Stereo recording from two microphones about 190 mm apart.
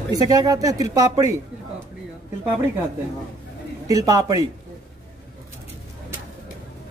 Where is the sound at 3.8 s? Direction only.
20° right (ahead or behind).